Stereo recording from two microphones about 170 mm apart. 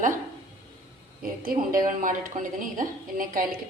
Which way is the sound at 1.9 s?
50° right (ahead or behind).